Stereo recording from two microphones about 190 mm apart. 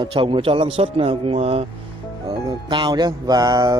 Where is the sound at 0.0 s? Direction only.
25° right (ahead or behind).